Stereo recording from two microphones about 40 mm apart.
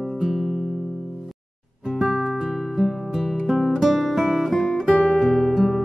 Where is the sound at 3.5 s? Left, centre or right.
Centre.